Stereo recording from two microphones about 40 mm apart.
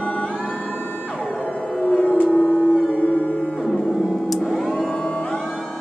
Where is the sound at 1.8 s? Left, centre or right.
Left.